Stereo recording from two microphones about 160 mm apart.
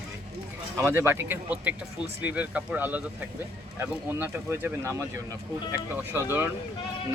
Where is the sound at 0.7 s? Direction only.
15° right (ahead or behind).